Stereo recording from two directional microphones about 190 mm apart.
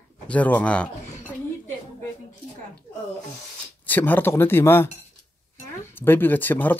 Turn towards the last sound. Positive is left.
turn(degrees=10)  # may be behind; listen again after turning